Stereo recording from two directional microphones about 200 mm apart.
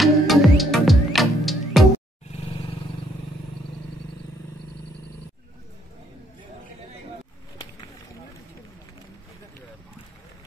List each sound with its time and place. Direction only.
0.0 s music: centre (ahead or behind)
2.3 s vehicle: 30° left (ahead or behind)